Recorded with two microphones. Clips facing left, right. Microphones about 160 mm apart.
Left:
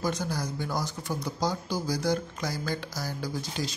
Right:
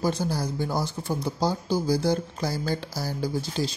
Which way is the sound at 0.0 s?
30° right (ahead or behind).